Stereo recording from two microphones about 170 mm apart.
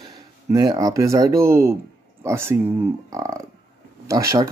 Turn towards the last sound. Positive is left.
turn(degrees=-20)  # may be behind; listen again after turning